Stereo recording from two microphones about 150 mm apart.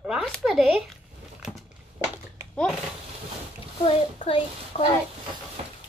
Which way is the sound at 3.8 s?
40° left (ahead or behind).